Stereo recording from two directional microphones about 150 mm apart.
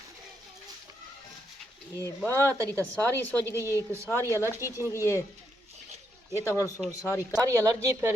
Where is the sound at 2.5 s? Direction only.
20° right (ahead or behind).